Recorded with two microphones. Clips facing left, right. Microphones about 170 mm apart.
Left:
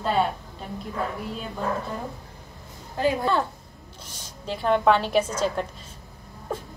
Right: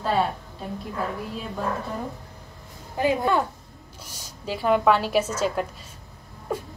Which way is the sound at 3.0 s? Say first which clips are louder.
Right 1 dB; 20° right (ahead or behind).